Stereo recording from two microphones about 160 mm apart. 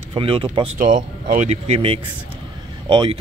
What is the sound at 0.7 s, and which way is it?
Speech, 55° right (ahead or behind).